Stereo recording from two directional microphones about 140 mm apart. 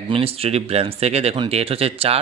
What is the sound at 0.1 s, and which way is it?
Speech, 45° right (ahead or behind).